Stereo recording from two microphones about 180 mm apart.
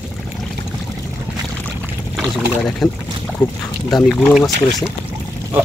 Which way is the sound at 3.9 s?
Centre (ahead or behind).